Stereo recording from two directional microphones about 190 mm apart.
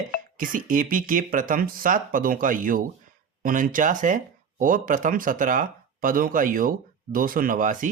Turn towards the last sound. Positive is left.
turn(degrees=-45)  # may be behind; listen again after turning